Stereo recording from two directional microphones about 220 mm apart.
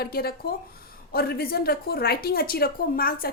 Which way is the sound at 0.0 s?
45° left (ahead or behind).